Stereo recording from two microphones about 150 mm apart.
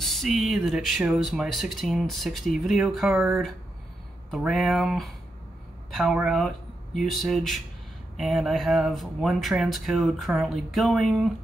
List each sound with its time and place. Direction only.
0.0 s speech: centre (ahead or behind)
5.9 s a sound: centre (ahead or behind)
6.1 s speech: centre (ahead or behind)